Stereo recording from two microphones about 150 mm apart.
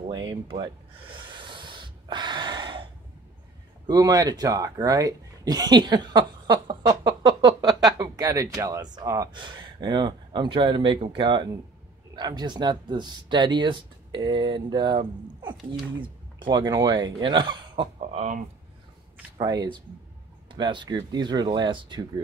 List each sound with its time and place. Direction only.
0.1 s speech: 25° right (ahead or behind)
0.5 s gasp: 35° right (ahead or behind)
3.8 s speech: 25° right (ahead or behind)
18.1 s speech: 55° right (ahead or behind)
19.3 s speech: 25° right (ahead or behind)